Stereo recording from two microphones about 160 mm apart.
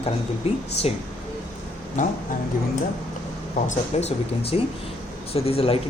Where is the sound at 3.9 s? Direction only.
45° left (ahead or behind).